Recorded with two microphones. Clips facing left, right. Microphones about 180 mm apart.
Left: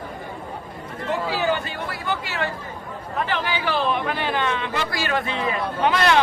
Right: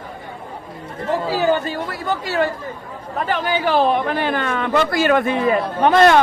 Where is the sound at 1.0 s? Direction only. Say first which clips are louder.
Right 5 dB; 40° right (ahead or behind).